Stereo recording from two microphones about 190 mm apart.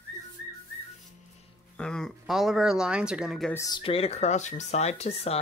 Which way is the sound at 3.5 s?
20° left (ahead or behind).